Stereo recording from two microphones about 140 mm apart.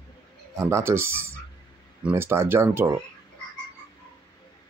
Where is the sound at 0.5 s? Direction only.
20° right (ahead or behind).